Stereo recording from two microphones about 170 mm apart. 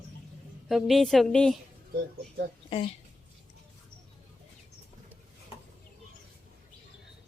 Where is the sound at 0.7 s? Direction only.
Centre (ahead or behind).